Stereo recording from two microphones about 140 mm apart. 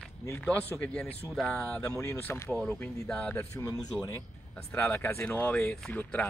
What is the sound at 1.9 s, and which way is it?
Speech, 20° left (ahead or behind).